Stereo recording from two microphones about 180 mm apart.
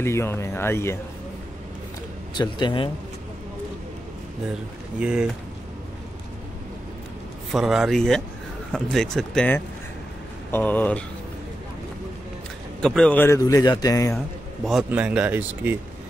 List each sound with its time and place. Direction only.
0.0 s speech: 15° left (ahead or behind)
2.3 s a man's voice: 25° left (ahead or behind)
5.0 s speech: 5° right (ahead or behind)
7.5 s speech: centre (ahead or behind)
12.8 s speech: 5° left (ahead or behind)
13.4 s a man's voice: 20° left (ahead or behind)
14.1 s speech: centre (ahead or behind)